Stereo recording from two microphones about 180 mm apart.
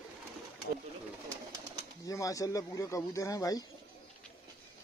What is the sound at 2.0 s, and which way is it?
Speech, 20° left (ahead or behind).